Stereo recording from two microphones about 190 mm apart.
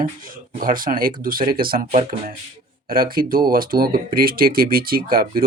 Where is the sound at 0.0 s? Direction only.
45° right (ahead or behind).